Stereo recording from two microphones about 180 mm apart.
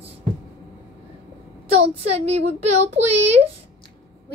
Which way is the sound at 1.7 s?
35° right (ahead or behind).